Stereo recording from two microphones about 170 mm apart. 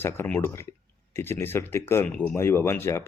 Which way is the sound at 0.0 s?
15° left (ahead or behind).